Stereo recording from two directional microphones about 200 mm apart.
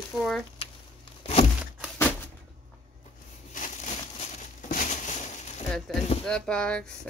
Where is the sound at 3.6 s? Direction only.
40° left (ahead or behind).